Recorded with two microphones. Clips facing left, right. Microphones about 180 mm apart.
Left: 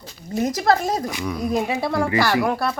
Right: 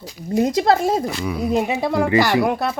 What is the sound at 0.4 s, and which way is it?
Speech, 25° right (ahead or behind).